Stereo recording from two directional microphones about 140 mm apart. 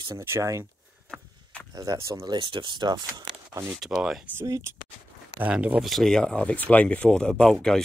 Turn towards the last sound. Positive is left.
turn(degrees=5)  # may be behind; listen again after turning